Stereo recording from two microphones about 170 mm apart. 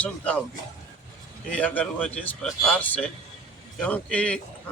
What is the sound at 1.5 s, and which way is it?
A man's voice, 10° left (ahead or behind).